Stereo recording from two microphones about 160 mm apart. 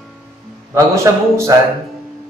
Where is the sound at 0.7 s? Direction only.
20° right (ahead or behind).